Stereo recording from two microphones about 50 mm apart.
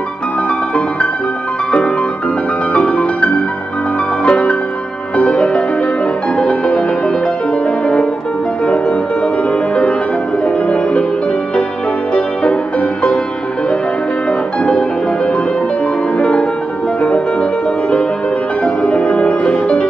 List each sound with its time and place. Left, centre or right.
2.7 s music: left
12.1 s music: centre
14.6 s music: left
16.2 s music: centre